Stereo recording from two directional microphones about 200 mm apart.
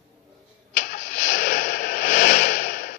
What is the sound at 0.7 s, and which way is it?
Vehicle, 45° left (ahead or behind).